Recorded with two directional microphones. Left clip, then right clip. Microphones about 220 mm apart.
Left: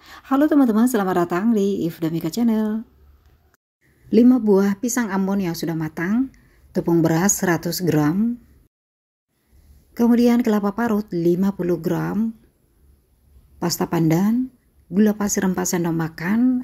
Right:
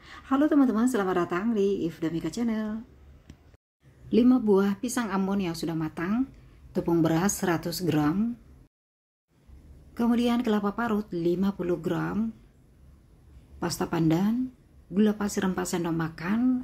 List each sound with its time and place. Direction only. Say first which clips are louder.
0.0 s a woman's voice: left 6 dB; 35° left (ahead or behind)
4.1 s speech: left 6 dB; 25° left (ahead or behind)
9.9 s speech: left 9 dB; 25° left (ahead or behind)
13.6 s speech: left 7 dB; 30° left (ahead or behind)